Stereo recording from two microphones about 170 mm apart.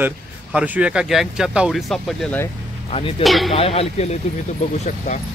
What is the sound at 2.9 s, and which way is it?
Speech, 35° left (ahead or behind).